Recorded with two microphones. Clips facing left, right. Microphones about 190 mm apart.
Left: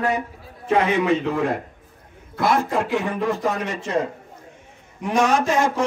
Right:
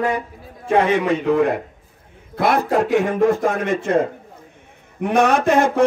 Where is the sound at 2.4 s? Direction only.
60° right (ahead or behind).